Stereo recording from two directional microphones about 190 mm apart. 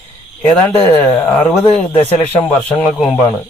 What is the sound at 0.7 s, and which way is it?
Speech, 10° left (ahead or behind).